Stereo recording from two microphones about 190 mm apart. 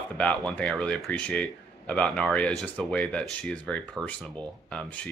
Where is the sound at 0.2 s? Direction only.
5° left (ahead or behind).